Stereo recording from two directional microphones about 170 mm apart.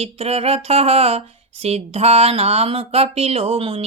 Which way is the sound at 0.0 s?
35° right (ahead or behind).